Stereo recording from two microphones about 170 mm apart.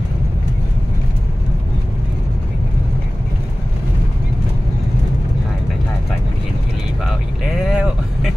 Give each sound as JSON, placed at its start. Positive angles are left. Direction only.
{"t": 7.5, "sound": "vehicle", "side_deg": 0}